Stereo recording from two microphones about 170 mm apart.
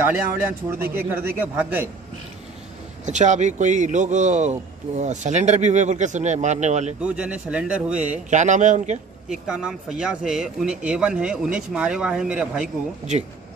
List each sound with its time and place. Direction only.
0.0 s speech: 15° right (ahead or behind)
3.1 s speech: 45° right (ahead or behind)
7.0 s speech: 5° right (ahead or behind)
8.3 s speech: 45° right (ahead or behind)
9.3 s speech: 5° right (ahead or behind)